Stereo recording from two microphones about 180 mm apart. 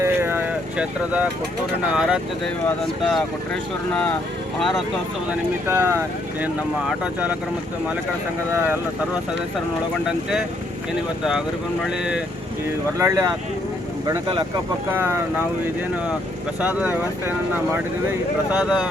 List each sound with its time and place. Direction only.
0.0 s a sound: 15° right (ahead or behind)
2.0 s speech: 5° right (ahead or behind)
5.6 s speech: 15° right (ahead or behind)
10.1 s speech: 5° right (ahead or behind)
13.0 s speech: 15° right (ahead or behind)
14.9 s speech: 10° right (ahead or behind)
16.6 s speech: 10° right (ahead or behind)
18.5 s speech: 5° right (ahead or behind)